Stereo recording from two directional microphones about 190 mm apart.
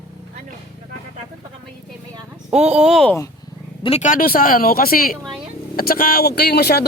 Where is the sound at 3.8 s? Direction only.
35° left (ahead or behind); by 6.9 s 55° left (ahead or behind).